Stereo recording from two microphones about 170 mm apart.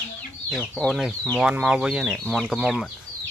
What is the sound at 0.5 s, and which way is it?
Speech, 5° left (ahead or behind).